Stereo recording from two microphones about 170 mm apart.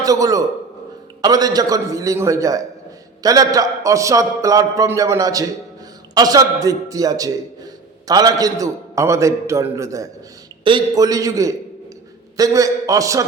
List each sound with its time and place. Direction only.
0.0 s a man's voice: 20° right (ahead or behind)
10.6 s a man's voice: 30° right (ahead or behind)